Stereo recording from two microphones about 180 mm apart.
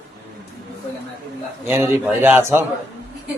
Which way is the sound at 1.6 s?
10° right (ahead or behind).